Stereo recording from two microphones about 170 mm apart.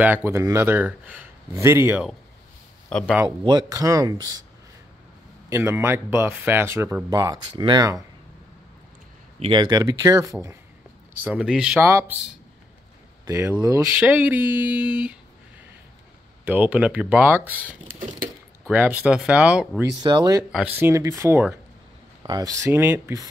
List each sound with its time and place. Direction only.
0.0 s speech: 10° right (ahead or behind)
2.9 s speech: 5° left (ahead or behind)
3.3 s speech: 25° right (ahead or behind)
5.5 s speech: 15° right (ahead or behind)
9.4 s speech: 25° right (ahead or behind)
11.1 s speech: 10° right (ahead or behind)
11.8 s speech: 15° right (ahead or behind)
13.2 s speech: 15° right (ahead or behind)
16.4 s speech: 10° right (ahead or behind)
18.7 s speech: 10° right (ahead or behind)
19.8 s speech: 15° right (ahead or behind)
20.5 s speech: 10° right (ahead or behind)